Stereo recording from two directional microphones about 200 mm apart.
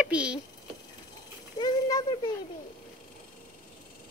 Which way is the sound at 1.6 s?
20° left (ahead or behind).